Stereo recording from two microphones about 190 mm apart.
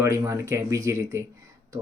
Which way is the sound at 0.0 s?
15° right (ahead or behind).